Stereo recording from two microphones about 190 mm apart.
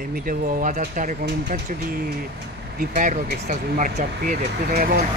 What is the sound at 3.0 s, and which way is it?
Speech, 45° right (ahead or behind).